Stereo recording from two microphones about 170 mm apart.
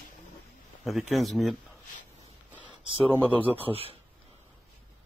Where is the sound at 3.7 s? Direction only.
35° right (ahead or behind).